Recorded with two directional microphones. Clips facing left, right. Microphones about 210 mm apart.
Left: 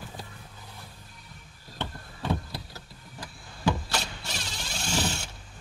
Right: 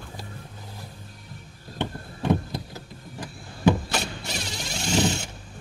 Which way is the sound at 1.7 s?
15° right (ahead or behind).